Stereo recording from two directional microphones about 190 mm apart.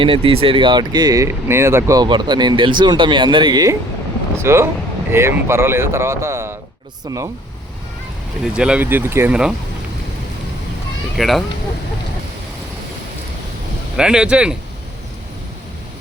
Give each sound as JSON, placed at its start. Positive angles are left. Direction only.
{"t": 0.0, "sound": "speech", "side_deg": -30}
{"t": 8.5, "sound": "speech", "side_deg": -5}
{"t": 11.2, "sound": "speech", "side_deg": 0}
{"t": 13.9, "sound": "speech", "side_deg": -5}